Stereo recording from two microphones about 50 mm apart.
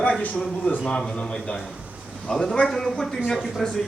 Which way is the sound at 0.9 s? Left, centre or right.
Centre.